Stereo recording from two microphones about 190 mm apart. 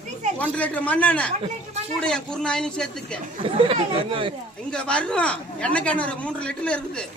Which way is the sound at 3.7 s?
25° right (ahead or behind).